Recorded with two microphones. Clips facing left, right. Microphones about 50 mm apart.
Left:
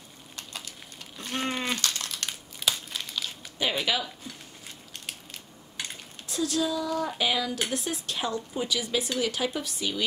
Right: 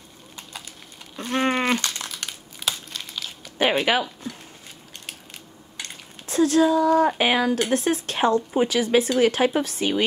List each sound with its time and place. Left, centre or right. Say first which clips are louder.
0.4 s a sound: right 1 dB; centre
1.3 s sheep: right 9 dB; right
1.8 s a sound: right 2 dB; centre
2.2 s crumpling: even; centre
3.5 s speech: right 8 dB; right
6.2 s speech: right 10 dB; right